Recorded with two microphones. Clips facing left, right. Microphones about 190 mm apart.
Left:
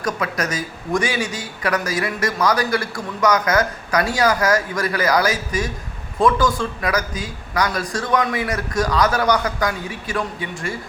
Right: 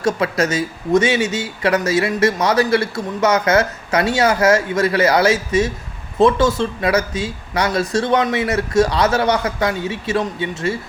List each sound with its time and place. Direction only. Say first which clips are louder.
0.0 s speech: right 6 dB; 25° right (ahead or behind)